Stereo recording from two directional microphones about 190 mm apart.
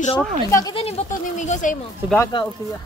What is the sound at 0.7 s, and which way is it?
Speech, 35° left (ahead or behind).